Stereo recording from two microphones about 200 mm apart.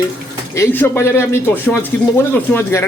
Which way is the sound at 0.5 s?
10° left (ahead or behind).